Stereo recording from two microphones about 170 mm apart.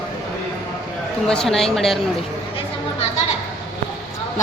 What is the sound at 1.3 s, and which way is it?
Speech, 5° left (ahead or behind).